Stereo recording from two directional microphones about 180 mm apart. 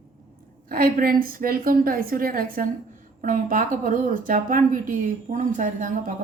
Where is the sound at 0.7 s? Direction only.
55° right (ahead or behind).